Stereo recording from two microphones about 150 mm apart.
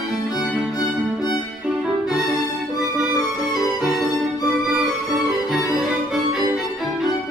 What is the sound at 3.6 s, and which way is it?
Music, centre (ahead or behind).